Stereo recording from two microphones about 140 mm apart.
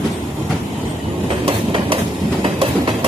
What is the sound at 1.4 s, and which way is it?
Train, 40° right (ahead or behind).